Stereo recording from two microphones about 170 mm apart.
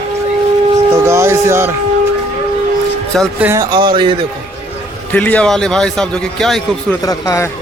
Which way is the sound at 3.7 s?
30° right (ahead or behind).